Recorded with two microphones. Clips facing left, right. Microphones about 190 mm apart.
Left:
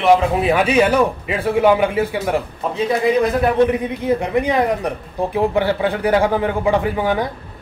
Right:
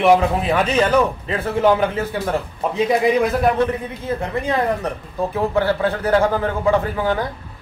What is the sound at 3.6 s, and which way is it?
Speech, 15° left (ahead or behind).